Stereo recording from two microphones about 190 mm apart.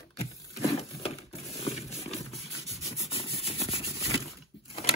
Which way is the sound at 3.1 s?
30° left (ahead or behind).